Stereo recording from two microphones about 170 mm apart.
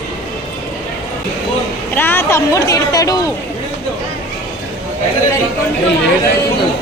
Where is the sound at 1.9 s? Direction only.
10° left (ahead or behind).